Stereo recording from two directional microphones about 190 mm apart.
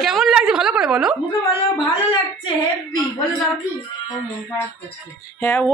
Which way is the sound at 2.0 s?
25° left (ahead or behind).